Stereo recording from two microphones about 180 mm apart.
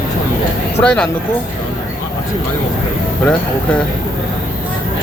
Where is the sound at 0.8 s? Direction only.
5° left (ahead or behind).